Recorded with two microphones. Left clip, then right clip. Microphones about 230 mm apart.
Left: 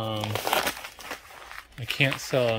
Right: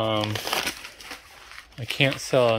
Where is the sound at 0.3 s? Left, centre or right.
Centre.